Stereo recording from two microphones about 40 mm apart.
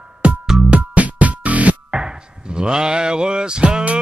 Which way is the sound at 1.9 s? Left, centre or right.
Right.